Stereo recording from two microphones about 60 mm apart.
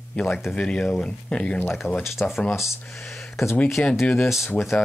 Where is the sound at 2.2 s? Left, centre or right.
Left.